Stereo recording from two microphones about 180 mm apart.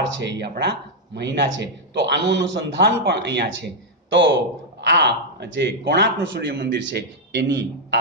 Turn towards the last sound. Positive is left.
turn(degrees=-70)  # may be behind; listen again after turning